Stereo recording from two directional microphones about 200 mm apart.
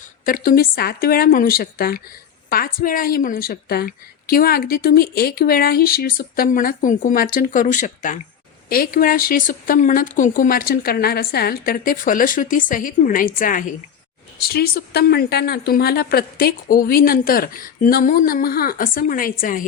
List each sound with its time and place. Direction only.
0.3 s a woman's voice: 45° left (ahead or behind)